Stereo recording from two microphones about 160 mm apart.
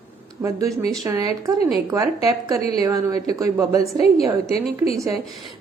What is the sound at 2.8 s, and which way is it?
A woman's voice, 20° right (ahead or behind).